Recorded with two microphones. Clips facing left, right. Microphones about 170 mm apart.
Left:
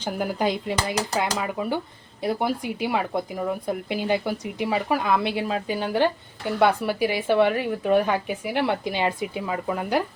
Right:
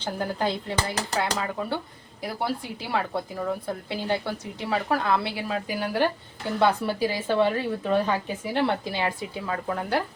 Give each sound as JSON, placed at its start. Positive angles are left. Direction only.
{"t": 0.0, "sound": "speech", "side_deg": 15}